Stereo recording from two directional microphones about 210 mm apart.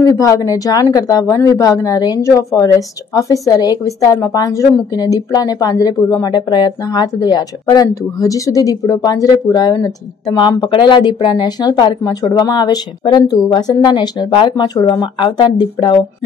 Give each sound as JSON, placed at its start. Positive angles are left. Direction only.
{"t": 0.0, "sound": "a woman's voice", "side_deg": 15}